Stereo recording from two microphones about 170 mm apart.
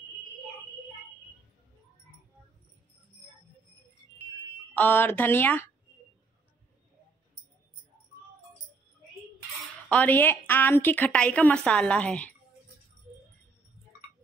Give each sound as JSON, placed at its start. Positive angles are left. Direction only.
{"t": 4.7, "sound": "a woman's voice", "side_deg": 10}
{"t": 9.8, "sound": "a woman's voice", "side_deg": 10}